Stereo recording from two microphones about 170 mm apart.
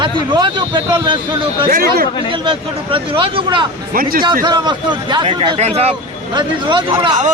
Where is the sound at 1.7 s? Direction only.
60° right (ahead or behind).